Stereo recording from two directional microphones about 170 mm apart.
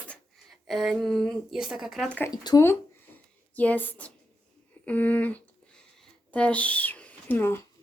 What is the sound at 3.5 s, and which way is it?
A woman's voice, 10° left (ahead or behind).